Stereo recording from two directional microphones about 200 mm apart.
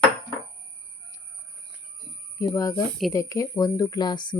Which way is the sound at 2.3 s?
15° left (ahead or behind).